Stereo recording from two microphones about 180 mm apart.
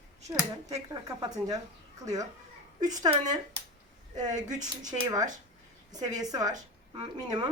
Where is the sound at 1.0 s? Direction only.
20° right (ahead or behind).